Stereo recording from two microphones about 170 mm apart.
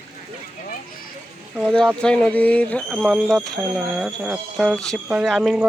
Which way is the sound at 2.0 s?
5° left (ahead or behind).